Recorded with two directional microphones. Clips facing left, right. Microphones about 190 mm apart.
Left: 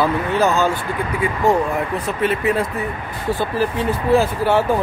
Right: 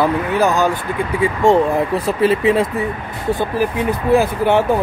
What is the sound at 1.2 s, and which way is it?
Speech, 25° right (ahead or behind).